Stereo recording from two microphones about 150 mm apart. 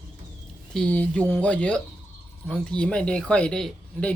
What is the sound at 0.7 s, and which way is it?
Speech, 5° left (ahead or behind).